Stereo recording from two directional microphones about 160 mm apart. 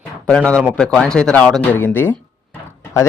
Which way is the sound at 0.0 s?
10° left (ahead or behind).